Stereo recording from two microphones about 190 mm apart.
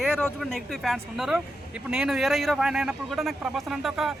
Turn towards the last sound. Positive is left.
turn(degrees=0)  # may be behind; listen again after turning